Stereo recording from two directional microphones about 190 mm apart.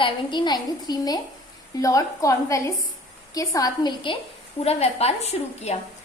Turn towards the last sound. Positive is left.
turn(degrees=35)  # may be behind; listen again after turning